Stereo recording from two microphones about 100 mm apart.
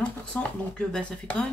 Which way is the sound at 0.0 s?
10° left (ahead or behind).